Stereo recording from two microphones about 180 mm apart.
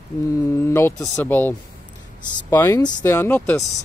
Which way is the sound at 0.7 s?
15° left (ahead or behind).